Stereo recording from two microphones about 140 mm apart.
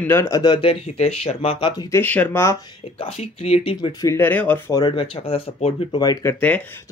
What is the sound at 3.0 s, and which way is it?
Speech, 45° left (ahead or behind).